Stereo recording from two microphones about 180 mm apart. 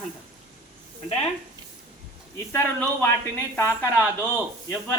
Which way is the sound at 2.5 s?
10° left (ahead or behind).